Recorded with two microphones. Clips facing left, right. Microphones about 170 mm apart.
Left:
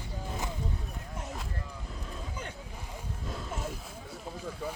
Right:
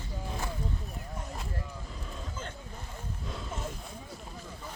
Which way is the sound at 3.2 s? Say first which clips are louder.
Left 1 dB; centre (ahead or behind).